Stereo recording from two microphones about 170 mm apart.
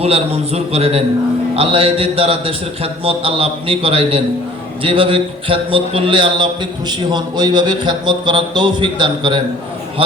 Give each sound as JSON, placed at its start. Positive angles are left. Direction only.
{"t": 0.0, "sound": "a man's voice", "side_deg": -35}